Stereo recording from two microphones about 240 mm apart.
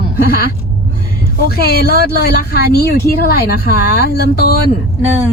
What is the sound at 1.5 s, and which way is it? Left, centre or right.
Speech, left.